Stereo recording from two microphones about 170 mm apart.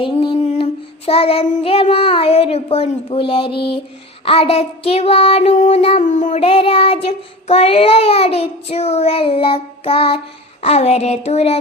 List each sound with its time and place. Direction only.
0.0 s child singing: 30° left (ahead or behind)